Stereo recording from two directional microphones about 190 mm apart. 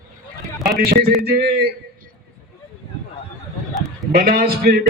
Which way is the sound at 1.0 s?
55° right (ahead or behind).